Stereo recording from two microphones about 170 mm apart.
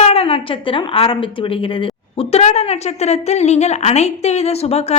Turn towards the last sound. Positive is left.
turn(degrees=40)  # may be behind; listen again after turning